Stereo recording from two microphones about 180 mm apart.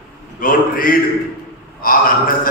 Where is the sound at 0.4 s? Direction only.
50° left (ahead or behind).